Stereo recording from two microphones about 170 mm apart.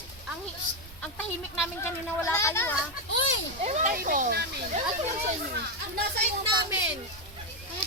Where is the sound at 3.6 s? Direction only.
45° right (ahead or behind).